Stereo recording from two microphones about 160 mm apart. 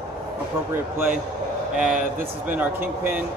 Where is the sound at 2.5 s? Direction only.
10° right (ahead or behind).